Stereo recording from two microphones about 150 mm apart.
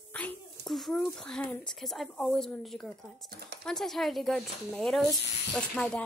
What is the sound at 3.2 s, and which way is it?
Speech, 90° right.